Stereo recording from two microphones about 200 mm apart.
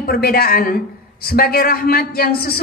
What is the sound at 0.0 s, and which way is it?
A woman's voice, 45° left (ahead or behind).